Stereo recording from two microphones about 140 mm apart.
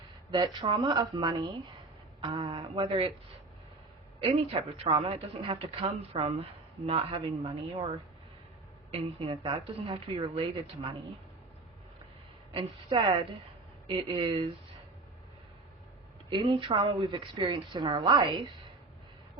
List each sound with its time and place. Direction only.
0.3 s speech: 30° right (ahead or behind)
4.2 s speech: 40° right (ahead or behind)
8.9 s speech: 40° right (ahead or behind)
12.5 s speech: 40° right (ahead or behind)
16.3 s speech: 35° right (ahead or behind)